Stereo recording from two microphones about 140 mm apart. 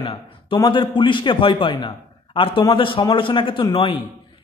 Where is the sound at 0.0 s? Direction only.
40° left (ahead or behind).